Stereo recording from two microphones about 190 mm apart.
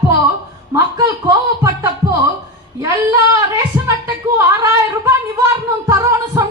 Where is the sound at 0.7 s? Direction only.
15° right (ahead or behind).